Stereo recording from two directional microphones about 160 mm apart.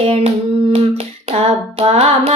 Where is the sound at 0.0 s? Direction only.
35° right (ahead or behind).